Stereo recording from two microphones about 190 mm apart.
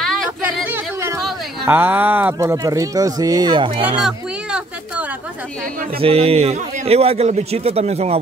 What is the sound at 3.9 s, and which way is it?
Music, 5° right (ahead or behind).